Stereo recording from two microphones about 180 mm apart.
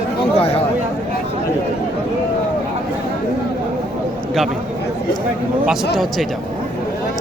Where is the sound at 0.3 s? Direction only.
35° left (ahead or behind).